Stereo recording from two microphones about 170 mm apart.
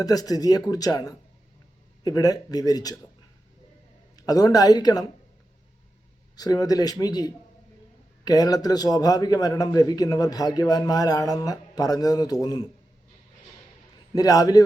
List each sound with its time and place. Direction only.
0.0 s a man's voice: 20° left (ahead or behind)
4.3 s a man's voice: 20° left (ahead or behind)
6.3 s a man's voice: 20° left (ahead or behind)
14.1 s a man's voice: 20° left (ahead or behind)